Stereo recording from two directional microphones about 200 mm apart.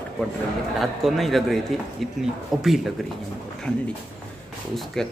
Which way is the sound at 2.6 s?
Centre (ahead or behind).